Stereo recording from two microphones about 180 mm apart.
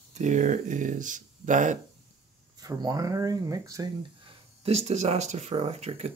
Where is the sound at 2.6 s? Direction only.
20° right (ahead or behind).